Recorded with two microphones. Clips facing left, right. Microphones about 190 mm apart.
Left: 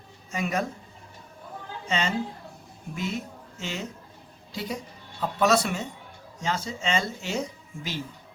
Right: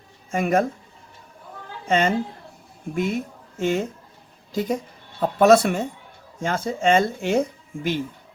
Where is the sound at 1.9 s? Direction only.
55° right (ahead or behind).